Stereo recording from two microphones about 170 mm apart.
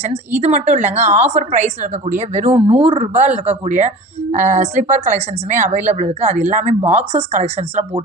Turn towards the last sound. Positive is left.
turn(degrees=-40)  # may be behind; listen again after turning